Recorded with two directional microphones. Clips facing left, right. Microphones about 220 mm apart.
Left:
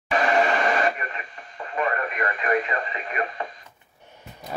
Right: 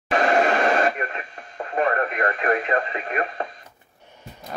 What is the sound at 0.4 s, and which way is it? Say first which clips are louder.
Radio: right 2 dB; 45° right (ahead or behind).